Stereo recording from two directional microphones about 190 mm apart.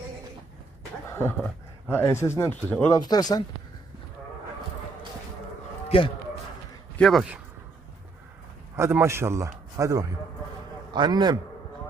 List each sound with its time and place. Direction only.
1.4 s speech: 5° left (ahead or behind)
2.9 s speech: 20° left (ahead or behind)
5.9 s speech: 30° left (ahead or behind)
7.0 s speech: centre (ahead or behind)
8.7 s a man's voice: 15° right (ahead or behind)